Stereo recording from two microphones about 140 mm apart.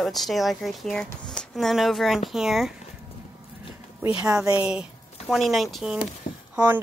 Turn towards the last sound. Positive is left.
turn(degrees=-10)  # may be behind; listen again after turning